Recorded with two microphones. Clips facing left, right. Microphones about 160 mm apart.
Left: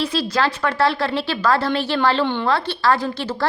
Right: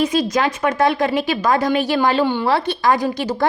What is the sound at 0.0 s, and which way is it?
A woman's voice, 15° right (ahead or behind).